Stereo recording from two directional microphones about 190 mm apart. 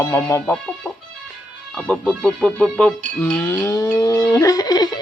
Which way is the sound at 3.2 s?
10° left (ahead or behind).